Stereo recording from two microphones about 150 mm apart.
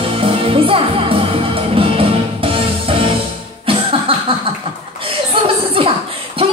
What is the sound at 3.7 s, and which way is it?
Cough, 40° right (ahead or behind).